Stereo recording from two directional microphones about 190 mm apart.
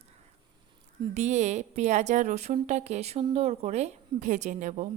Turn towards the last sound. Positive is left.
turn(degrees=-40)  # may be behind; listen again after turning